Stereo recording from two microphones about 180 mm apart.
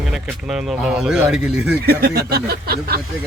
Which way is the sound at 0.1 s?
Centre (ahead or behind).